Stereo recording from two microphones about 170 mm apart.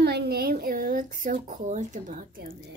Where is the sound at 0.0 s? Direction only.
65° right (ahead or behind).